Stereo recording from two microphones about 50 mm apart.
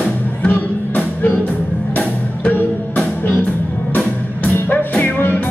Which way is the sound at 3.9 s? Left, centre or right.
Left.